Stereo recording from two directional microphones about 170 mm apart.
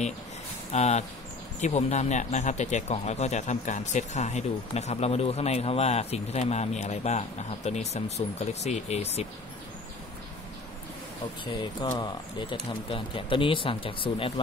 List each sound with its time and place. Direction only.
0.7 s speech: 40° left (ahead or behind)
11.5 s speech: 25° left (ahead or behind)